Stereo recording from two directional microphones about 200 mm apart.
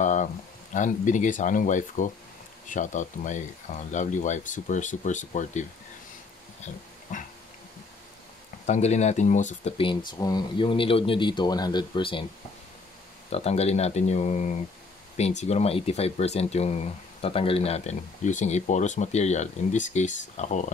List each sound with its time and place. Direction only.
0.0 s a sound: 35° left (ahead or behind)
0.7 s speech: 40° left (ahead or behind)
6.6 s a sound: 40° left (ahead or behind)
8.6 s speech: 35° left (ahead or behind)
10.1 s speech: 20° left (ahead or behind)
13.3 s speech: 30° left (ahead or behind)